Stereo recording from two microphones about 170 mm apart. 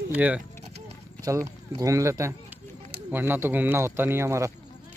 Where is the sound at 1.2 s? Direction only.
15° right (ahead or behind).